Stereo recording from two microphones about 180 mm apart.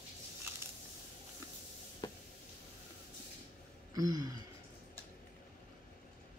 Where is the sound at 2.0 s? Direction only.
25° left (ahead or behind).